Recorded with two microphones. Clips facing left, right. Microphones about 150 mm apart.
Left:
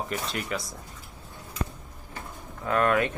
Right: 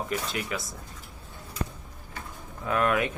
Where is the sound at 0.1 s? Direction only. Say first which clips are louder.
Even; centre (ahead or behind).